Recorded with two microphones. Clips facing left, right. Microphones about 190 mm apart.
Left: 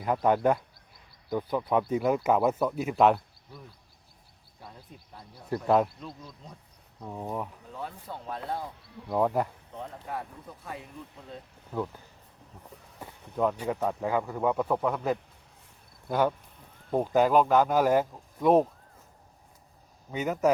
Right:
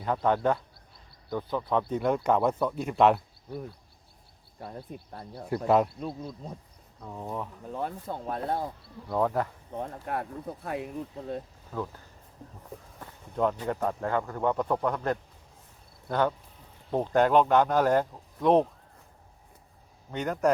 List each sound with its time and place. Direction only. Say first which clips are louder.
0.0 s a man's voice: left 2 dB; 10° left (ahead or behind)
3.5 s speech: right 11 dB; 60° right (ahead or behind)
5.6 s a man's voice: right 1 dB; centre (ahead or behind)
6.0 s speech: right 8 dB; 60° right (ahead or behind)
7.0 s speech: left 1 dB; 10° left (ahead or behind)
7.7 s speech: right 5 dB; 50° right (ahead or behind)
9.0 s speech: left 1 dB; 10° left (ahead or behind)
9.7 s speech: right 4 dB; 55° right (ahead or behind)
11.7 s speech: left 2 dB; 15° left (ahead or behind)
13.3 s a man's voice: even; centre (ahead or behind)
20.1 s a man's voice: left 1 dB; 5° left (ahead or behind)